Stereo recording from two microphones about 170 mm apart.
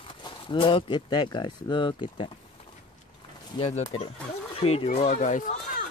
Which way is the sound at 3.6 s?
35° left (ahead or behind).